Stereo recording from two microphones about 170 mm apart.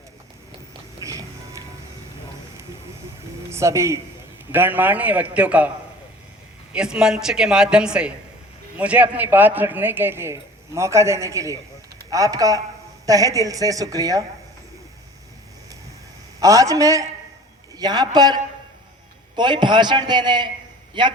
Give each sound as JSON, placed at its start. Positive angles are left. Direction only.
{"t": 1.0, "sound": "music", "side_deg": -20}
{"t": 3.5, "sound": "speech", "side_deg": -15}
{"t": 6.7, "sound": "a woman's voice", "side_deg": -5}
{"t": 16.4, "sound": "a woman's voice", "side_deg": -20}
{"t": 19.4, "sound": "a woman's voice", "side_deg": -25}